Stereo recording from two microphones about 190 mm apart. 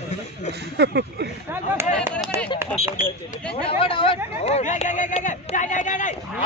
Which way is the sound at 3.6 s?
30° left (ahead or behind).